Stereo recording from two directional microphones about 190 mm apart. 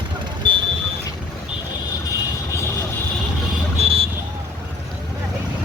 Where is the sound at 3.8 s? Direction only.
30° right (ahead or behind).